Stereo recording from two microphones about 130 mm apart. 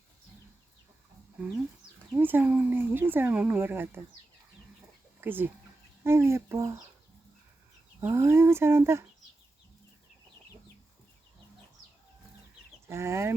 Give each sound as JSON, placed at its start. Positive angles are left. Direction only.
{"t": 2.1, "sound": "speech", "side_deg": -15}
{"t": 5.2, "sound": "speech", "side_deg": -15}
{"t": 8.0, "sound": "speech", "side_deg": -20}
{"t": 12.9, "sound": "speech", "side_deg": -20}